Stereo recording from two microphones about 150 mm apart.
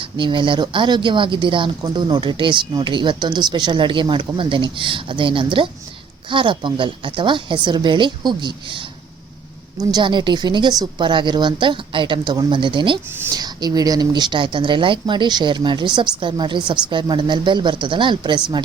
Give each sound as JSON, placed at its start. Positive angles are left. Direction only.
{"t": 0.2, "sound": "speech", "side_deg": -35}
{"t": 9.9, "sound": "speech", "side_deg": -30}